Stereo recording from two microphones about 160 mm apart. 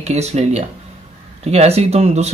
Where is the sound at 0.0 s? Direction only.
45° right (ahead or behind).